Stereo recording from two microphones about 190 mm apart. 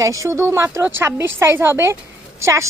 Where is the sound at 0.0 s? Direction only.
15° right (ahead or behind).